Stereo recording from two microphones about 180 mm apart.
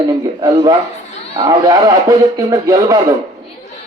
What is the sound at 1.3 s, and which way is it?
A man's voice, 20° right (ahead or behind).